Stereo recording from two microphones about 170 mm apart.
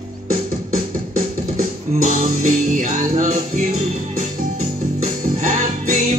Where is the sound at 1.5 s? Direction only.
50° right (ahead or behind).